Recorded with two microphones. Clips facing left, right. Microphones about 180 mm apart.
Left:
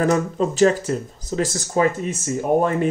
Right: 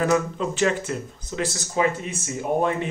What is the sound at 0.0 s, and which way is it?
Speech, 40° left (ahead or behind).